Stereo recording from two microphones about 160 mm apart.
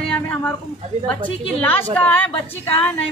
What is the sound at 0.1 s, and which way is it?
Speech, 10° left (ahead or behind).